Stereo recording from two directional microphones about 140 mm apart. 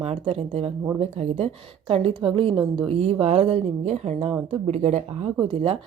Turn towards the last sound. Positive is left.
turn(degrees=-45)  # may be behind; listen again after turning